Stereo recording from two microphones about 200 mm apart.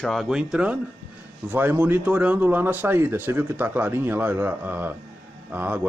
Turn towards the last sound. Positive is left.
turn(degrees=-10)  # may be behind; listen again after turning